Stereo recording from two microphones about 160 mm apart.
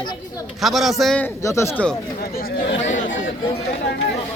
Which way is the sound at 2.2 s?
70° left (ahead or behind).